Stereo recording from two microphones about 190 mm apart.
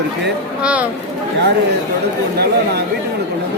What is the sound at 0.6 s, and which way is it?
Speech, 5° right (ahead or behind).